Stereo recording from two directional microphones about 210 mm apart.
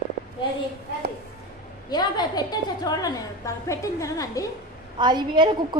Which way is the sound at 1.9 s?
20° left (ahead or behind).